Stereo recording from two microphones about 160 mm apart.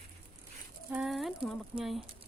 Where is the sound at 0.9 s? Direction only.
5° right (ahead or behind).